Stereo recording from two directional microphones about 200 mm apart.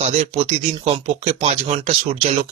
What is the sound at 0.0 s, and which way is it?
Speech, 35° right (ahead or behind).